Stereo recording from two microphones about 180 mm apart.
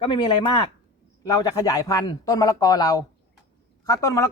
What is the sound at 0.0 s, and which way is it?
Speech, 25° left (ahead or behind).